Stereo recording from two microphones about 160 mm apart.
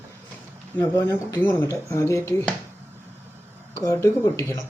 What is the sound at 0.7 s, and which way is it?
Speech, 20° left (ahead or behind).